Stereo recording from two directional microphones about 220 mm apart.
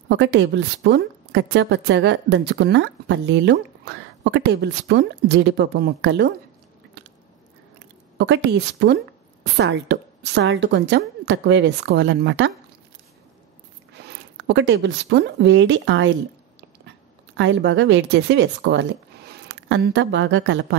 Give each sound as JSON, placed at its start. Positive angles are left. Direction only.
{"t": 0.1, "sound": "a woman's voice", "side_deg": -50}
{"t": 8.2, "sound": "a woman's voice", "side_deg": -50}
{"t": 13.9, "sound": "speech", "side_deg": -50}
{"t": 17.4, "sound": "speech", "side_deg": -55}